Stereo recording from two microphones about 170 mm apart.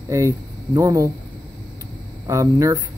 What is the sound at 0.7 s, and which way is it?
Speech, 20° right (ahead or behind).